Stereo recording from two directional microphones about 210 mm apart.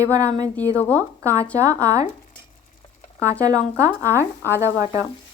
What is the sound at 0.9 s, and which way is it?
Speech, 15° right (ahead or behind).